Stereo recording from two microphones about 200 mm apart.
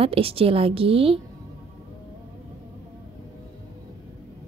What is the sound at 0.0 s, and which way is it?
A woman's voice, 30° right (ahead or behind).